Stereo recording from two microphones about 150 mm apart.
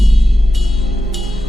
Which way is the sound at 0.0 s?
Centre (ahead or behind).